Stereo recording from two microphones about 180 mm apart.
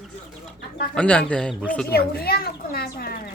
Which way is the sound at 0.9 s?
5° left (ahead or behind).